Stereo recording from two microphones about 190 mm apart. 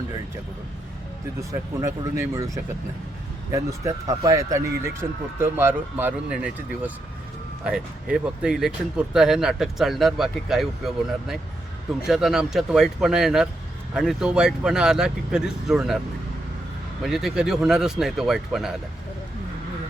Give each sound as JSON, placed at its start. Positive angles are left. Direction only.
{"t": 1.4, "sound": "speech", "side_deg": -15}
{"t": 3.5, "sound": "speech", "side_deg": -15}
{"t": 17.0, "sound": "speech", "side_deg": 0}